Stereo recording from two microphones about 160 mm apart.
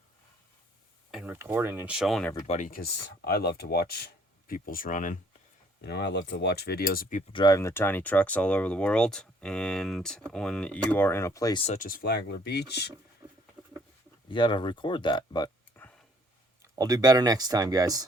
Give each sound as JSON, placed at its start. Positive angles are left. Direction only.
{"t": 1.1, "sound": "speech", "side_deg": -10}
{"t": 2.5, "sound": "speech", "side_deg": 55}
{"t": 5.8, "sound": "speech", "side_deg": 90}
{"t": 7.3, "sound": "speech", "side_deg": 20}
{"t": 11.6, "sound": "speech", "side_deg": 50}
{"t": 13.2, "sound": "patter", "side_deg": -15}
{"t": 14.3, "sound": "speech", "side_deg": 30}
{"t": 15.7, "sound": "a sound", "side_deg": 10}
{"t": 16.7, "sound": "speech", "side_deg": -25}